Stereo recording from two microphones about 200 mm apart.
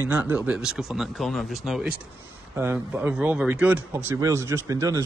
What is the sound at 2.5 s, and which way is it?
Speech, 10° right (ahead or behind).